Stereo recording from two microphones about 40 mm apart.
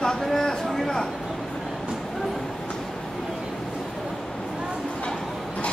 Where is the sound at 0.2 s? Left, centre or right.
Centre.